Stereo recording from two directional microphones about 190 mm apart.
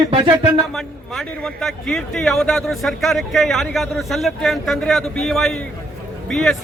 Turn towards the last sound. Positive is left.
turn(degrees=0)  # may be behind; listen again after turning